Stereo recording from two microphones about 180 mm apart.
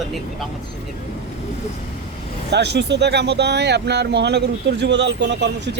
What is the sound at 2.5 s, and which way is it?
Speech, 70° right (ahead or behind).